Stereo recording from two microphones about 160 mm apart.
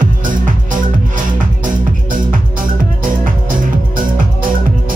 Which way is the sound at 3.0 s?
60° right (ahead or behind).